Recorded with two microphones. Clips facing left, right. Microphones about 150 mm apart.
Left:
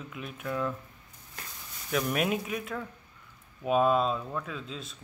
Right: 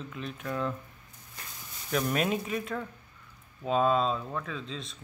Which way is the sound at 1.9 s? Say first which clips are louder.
Even; 5° left (ahead or behind).